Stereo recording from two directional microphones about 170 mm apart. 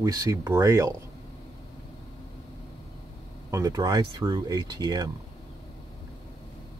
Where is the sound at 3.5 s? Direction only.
20° right (ahead or behind).